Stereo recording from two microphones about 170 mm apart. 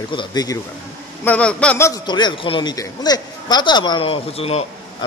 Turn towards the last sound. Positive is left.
turn(degrees=35)  # may be behind; listen again after turning